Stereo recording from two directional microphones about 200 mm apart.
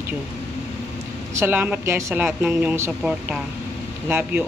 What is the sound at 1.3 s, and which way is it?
A woman's voice, 10° right (ahead or behind).